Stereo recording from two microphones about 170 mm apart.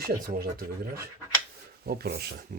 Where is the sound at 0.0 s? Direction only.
65° right (ahead or behind).